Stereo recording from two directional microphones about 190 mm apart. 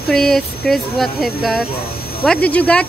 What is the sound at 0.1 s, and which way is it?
Speech, centre (ahead or behind).